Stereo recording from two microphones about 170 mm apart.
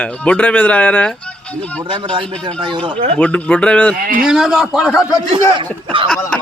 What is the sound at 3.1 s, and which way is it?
A man's voice, 5° left (ahead or behind).